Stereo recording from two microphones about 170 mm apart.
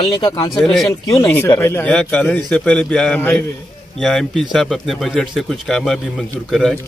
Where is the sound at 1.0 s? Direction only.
15° left (ahead or behind).